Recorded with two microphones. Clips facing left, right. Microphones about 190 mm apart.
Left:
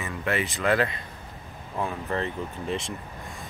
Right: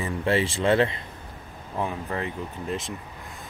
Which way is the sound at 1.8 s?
15° right (ahead or behind).